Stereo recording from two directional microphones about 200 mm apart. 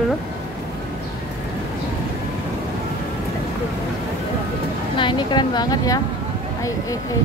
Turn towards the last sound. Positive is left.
turn(degrees=15)  # may be behind; listen again after turning